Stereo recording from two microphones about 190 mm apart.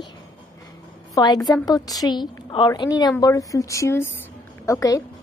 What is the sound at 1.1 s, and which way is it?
A woman's voice, 20° left (ahead or behind).